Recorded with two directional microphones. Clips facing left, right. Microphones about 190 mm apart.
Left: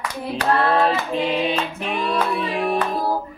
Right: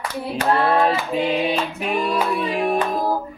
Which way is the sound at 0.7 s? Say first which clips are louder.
Right 1 dB; 10° right (ahead or behind).